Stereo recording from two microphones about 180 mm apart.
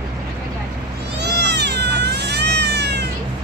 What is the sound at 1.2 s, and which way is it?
Cat, 70° right (ahead or behind).